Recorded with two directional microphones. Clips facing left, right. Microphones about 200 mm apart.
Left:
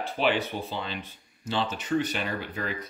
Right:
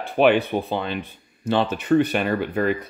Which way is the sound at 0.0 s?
60° right (ahead or behind).